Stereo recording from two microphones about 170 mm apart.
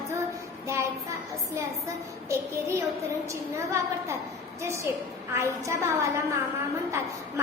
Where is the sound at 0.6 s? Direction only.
15° right (ahead or behind).